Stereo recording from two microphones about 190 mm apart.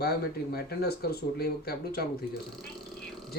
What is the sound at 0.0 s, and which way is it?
Speech, 55° left (ahead or behind).